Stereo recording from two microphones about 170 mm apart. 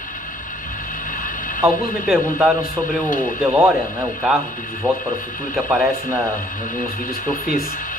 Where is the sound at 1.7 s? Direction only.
55° left (ahead or behind).